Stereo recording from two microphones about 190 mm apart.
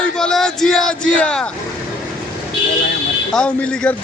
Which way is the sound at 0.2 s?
5° left (ahead or behind).